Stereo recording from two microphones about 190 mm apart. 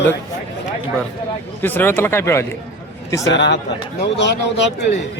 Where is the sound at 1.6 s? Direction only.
10° left (ahead or behind).